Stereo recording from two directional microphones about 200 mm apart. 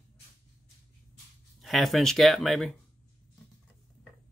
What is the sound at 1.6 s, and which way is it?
Speech, centre (ahead or behind).